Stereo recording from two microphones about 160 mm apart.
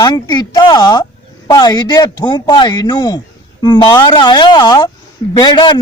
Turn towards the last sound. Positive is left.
turn(degrees=30)  # may be behind; listen again after turning